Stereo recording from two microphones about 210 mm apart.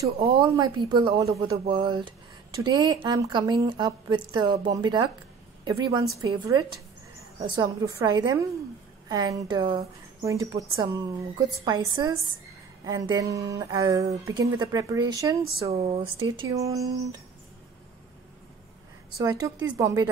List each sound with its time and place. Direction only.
0.2 s a woman's voice: 25° right (ahead or behind)
15.7 s a woman's voice: 30° right (ahead or behind)
19.1 s speech: 15° right (ahead or behind)